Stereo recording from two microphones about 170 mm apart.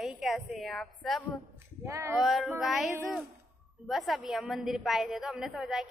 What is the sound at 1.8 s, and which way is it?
Speech, 15° right (ahead or behind).